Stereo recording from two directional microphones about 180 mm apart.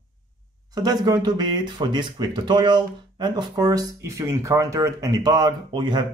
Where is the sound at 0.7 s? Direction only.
20° right (ahead or behind).